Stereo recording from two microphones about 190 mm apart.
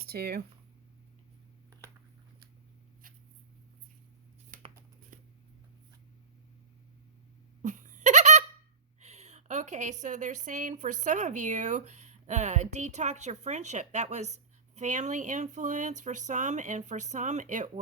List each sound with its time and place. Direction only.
0.1 s speech: 55° right (ahead or behind)
5.1 s a sound: 45° right (ahead or behind)
7.6 s laughter: 40° right (ahead or behind)
9.0 s speech: 35° right (ahead or behind)